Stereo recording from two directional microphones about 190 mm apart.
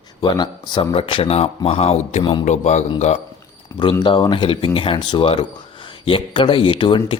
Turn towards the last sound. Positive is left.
turn(degrees=25)  # may be behind; listen again after turning